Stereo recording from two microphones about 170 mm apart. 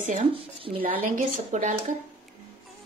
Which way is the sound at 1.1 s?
45° right (ahead or behind).